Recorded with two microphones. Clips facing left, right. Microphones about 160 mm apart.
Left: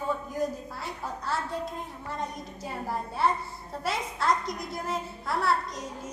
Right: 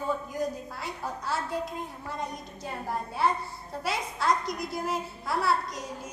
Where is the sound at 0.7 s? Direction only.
Centre (ahead or behind).